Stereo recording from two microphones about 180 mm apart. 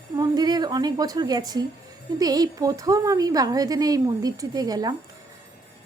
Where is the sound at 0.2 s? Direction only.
20° right (ahead or behind).